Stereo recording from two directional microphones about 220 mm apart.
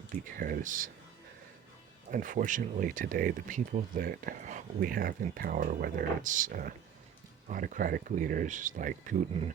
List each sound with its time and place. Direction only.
0.3 s speech: 40° right (ahead or behind)
2.0 s speech: 40° right (ahead or behind)